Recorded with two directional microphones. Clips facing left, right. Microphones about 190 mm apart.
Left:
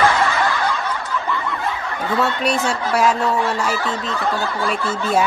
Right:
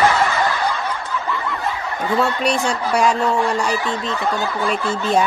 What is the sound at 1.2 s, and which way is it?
Snicker, centre (ahead or behind).